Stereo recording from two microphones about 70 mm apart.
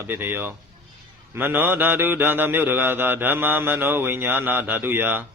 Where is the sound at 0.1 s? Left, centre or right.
Right.